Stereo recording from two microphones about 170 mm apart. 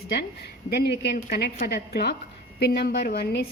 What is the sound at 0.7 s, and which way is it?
A woman's voice, 75° left (ahead or behind).